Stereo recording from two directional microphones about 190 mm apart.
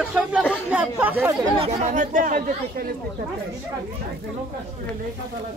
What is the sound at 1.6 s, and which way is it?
Speech, 35° right (ahead or behind).